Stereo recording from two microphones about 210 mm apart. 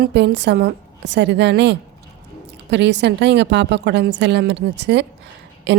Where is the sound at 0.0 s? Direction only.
50° right (ahead or behind).